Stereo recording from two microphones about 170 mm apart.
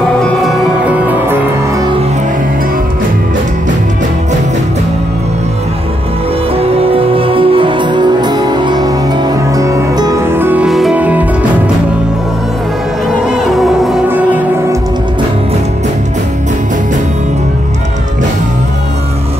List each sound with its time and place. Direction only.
0.2 s music: centre (ahead or behind)
6.5 s music: 35° right (ahead or behind); by 11.2 s 10° right (ahead or behind)
13.3 s music: 5° right (ahead or behind)